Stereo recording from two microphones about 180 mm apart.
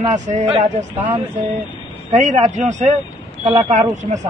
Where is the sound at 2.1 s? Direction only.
40° right (ahead or behind).